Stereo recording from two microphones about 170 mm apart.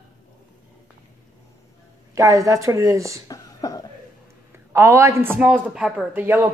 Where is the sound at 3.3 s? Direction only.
20° left (ahead or behind).